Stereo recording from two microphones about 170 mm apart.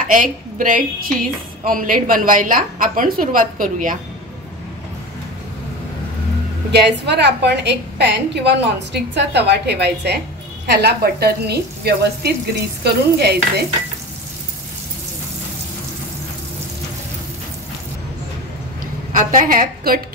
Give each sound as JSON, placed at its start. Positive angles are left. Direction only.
{"t": 0.0, "sound": "a woman's voice", "side_deg": -50}
{"t": 6.7, "sound": "a woman's voice", "side_deg": -85}
{"t": 19.1, "sound": "a woman's voice", "side_deg": -50}